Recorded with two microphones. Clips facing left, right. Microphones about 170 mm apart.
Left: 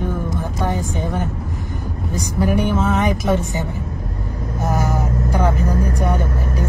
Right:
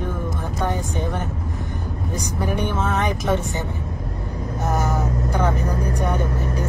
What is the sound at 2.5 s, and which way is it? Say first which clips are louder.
Speech: left 4 dB; 10° left (ahead or behind).